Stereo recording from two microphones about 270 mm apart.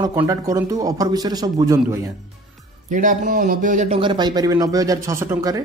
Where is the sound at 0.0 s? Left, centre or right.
Centre.